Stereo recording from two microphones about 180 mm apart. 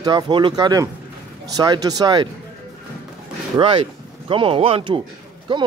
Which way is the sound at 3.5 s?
25° right (ahead or behind).